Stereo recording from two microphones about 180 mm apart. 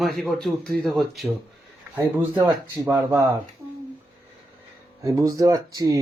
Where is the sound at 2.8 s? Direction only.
15° right (ahead or behind).